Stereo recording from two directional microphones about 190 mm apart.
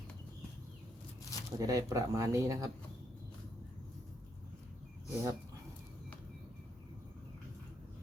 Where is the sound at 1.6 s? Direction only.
15° right (ahead or behind).